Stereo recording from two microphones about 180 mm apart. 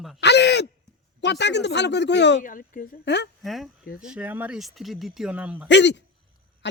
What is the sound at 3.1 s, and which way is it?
Speech, 75° left (ahead or behind).